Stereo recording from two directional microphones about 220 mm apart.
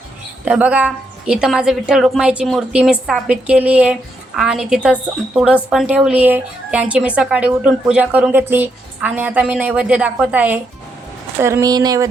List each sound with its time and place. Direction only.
0.4 s a woman's voice: 5° right (ahead or behind)